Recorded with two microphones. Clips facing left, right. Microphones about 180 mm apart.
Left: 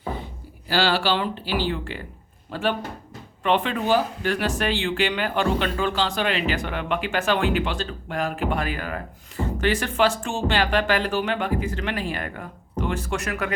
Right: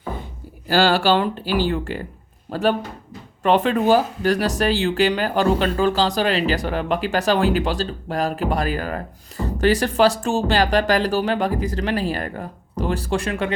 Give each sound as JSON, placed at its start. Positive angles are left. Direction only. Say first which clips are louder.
{"t": 0.7, "sound": "speech", "louder": "right 5 dB", "side_deg": -45}